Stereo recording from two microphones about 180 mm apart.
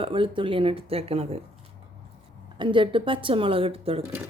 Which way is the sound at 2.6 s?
25° right (ahead or behind).